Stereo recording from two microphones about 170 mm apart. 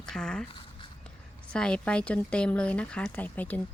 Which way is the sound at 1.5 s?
5° left (ahead or behind).